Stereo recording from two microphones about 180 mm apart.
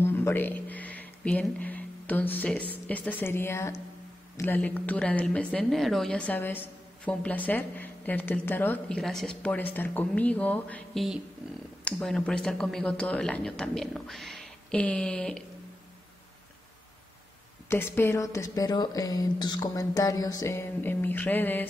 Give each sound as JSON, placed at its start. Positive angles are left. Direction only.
{"t": 0.0, "sound": "a woman's voice", "side_deg": 10}
{"t": 17.6, "sound": "speech", "side_deg": 15}